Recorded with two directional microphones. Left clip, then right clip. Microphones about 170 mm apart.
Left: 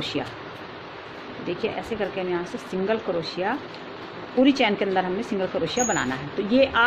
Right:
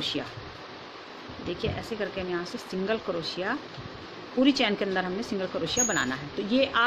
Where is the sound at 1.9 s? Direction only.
20° right (ahead or behind).